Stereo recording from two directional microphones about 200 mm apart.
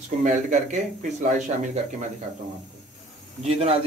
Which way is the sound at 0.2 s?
40° right (ahead or behind).